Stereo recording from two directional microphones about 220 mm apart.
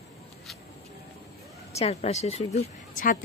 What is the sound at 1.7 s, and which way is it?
Speech, 30° left (ahead or behind).